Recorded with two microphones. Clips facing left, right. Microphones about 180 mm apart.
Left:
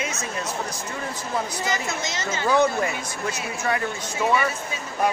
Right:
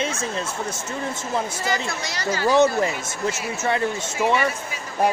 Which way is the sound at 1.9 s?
20° left (ahead or behind).